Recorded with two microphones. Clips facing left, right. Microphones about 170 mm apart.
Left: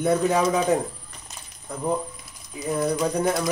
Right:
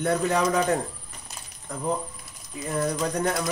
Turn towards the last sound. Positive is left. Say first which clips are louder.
# left 3 dB
turn(degrees=0)  # may be behind; listen again after turning